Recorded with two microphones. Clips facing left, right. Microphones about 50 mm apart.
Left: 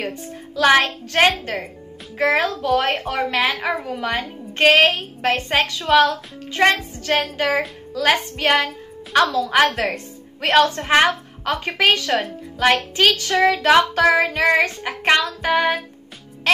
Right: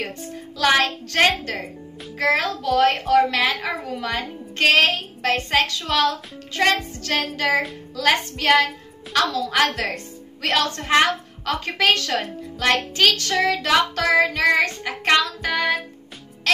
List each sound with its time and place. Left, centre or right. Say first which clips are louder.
0.0 s a woman's voice: left 2 dB; centre